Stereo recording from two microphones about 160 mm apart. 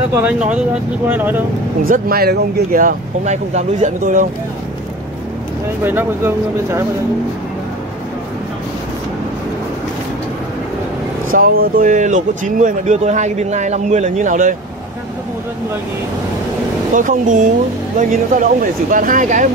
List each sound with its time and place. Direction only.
0.1 s speech: 10° right (ahead or behind)
1.9 s speech: 70° right (ahead or behind)
5.9 s speech: 15° right (ahead or behind)
11.2 s speech: 60° right (ahead or behind)
16.9 s speech: 55° right (ahead or behind)